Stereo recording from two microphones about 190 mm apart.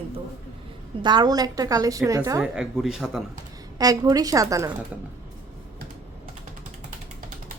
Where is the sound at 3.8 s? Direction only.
20° right (ahead or behind).